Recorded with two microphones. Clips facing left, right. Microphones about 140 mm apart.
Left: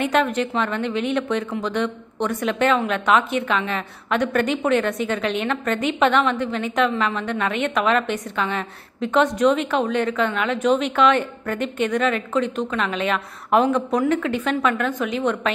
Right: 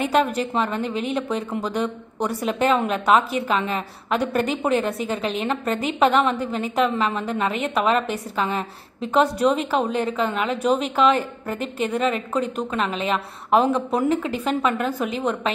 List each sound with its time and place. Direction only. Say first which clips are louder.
0.0 s a woman's voice: even; 35° right (ahead or behind)
2.4 s a woman's voice: even; 35° right (ahead or behind)